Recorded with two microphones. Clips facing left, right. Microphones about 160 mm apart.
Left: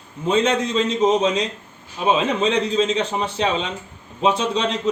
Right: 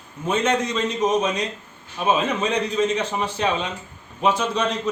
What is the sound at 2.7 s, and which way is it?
A man's voice, 25° left (ahead or behind).